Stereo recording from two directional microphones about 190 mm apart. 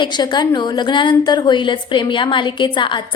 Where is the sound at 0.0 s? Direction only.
25° left (ahead or behind).